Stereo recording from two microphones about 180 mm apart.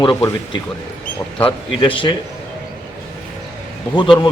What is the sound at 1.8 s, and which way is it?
Speech, 30° left (ahead or behind).